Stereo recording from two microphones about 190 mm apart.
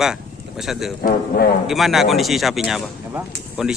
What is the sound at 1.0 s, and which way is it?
Speech, 55° left (ahead or behind).